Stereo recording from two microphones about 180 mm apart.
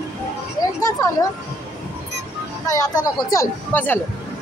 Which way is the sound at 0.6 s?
20° left (ahead or behind).